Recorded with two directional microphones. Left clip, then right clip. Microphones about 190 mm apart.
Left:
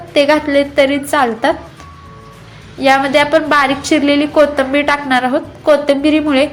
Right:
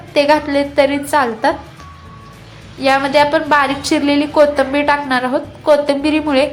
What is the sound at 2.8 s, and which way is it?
A woman's voice, 5° left (ahead or behind).